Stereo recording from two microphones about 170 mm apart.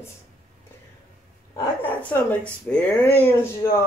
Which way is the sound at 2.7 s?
5° left (ahead or behind).